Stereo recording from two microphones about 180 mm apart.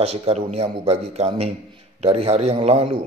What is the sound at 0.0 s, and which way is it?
A man's voice, 35° right (ahead or behind).